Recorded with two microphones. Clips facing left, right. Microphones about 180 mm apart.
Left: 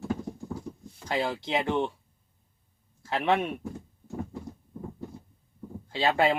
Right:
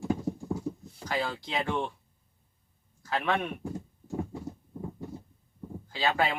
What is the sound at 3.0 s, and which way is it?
Speech, 25° left (ahead or behind).